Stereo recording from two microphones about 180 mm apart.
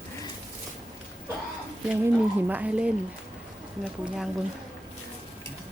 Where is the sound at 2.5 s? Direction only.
10° right (ahead or behind).